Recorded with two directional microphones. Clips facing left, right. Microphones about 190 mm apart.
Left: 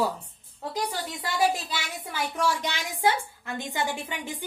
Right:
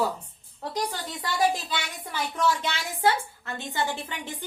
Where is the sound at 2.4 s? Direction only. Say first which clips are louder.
Right 2 dB; 15° left (ahead or behind).